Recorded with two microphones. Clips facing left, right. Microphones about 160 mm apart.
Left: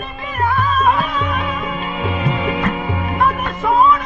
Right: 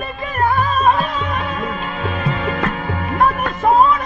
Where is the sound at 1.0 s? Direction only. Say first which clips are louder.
Left 1 dB; centre (ahead or behind).